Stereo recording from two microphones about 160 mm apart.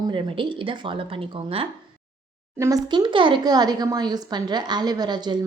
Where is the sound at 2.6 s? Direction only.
20° right (ahead or behind).